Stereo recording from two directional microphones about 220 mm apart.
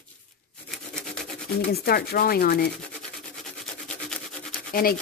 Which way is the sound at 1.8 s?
45° left (ahead or behind).